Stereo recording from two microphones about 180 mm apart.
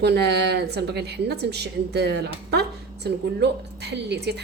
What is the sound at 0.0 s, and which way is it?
A woman's voice, 65° right (ahead or behind).